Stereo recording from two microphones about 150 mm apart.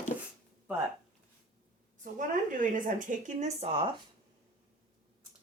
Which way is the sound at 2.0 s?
60° right (ahead or behind).